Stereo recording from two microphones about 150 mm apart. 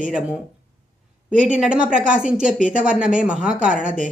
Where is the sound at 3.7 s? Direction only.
55° right (ahead or behind).